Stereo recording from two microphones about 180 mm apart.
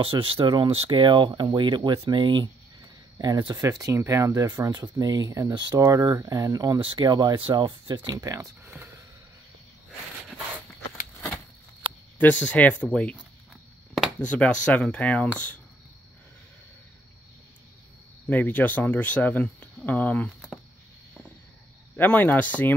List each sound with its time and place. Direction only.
0.0 s speech: 30° right (ahead or behind); by 8.9 s 15° right (ahead or behind)
11.1 s a sound: 10° left (ahead or behind)
12.2 s speech: 10° left (ahead or behind)
18.3 s speech: 10° left (ahead or behind)
21.9 s speech: 10° left (ahead or behind)